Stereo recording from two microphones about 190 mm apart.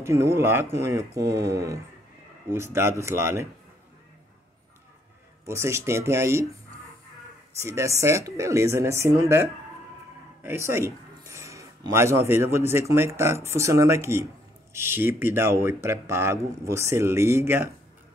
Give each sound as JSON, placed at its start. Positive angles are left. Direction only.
{"t": 0.0, "sound": "speech", "side_deg": -15}
{"t": 5.5, "sound": "speech", "side_deg": -15}
{"t": 7.6, "sound": "speech", "side_deg": -15}